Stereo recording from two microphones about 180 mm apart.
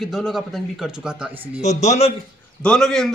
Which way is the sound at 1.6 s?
40° left (ahead or behind).